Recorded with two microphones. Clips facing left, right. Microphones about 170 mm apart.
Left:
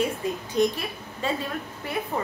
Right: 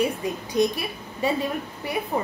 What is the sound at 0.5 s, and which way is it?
A woman's voice, 15° right (ahead or behind).